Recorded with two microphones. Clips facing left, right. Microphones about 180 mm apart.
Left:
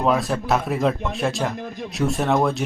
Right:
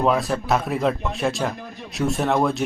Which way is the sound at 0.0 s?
Centre (ahead or behind).